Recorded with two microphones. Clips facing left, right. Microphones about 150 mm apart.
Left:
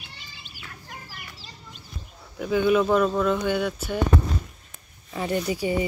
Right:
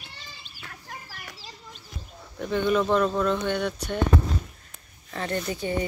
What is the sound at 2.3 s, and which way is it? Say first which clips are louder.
Speech: left 3 dB; 5° left (ahead or behind).